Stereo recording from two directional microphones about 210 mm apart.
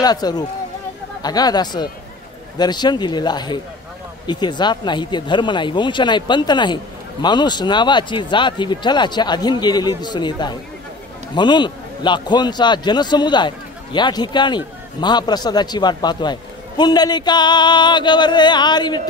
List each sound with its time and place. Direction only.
0.0 s speech: 20° left (ahead or behind)